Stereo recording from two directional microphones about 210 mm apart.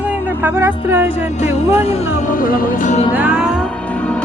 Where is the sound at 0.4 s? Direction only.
10° right (ahead or behind).